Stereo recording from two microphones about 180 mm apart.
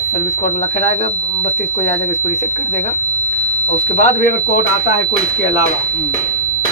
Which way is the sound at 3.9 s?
50° left (ahead or behind).